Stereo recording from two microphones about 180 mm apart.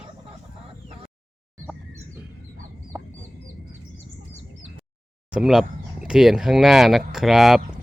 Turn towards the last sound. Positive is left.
turn(degrees=0)  # may be behind; listen again after turning